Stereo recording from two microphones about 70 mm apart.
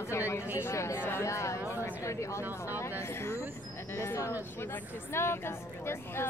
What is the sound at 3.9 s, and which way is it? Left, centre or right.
A woman's voice, left.